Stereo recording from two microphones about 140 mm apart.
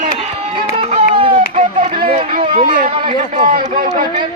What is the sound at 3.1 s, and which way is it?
Speech, 65° right (ahead or behind).